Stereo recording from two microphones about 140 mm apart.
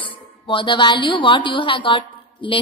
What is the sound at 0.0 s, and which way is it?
A woman's voice, 40° left (ahead or behind).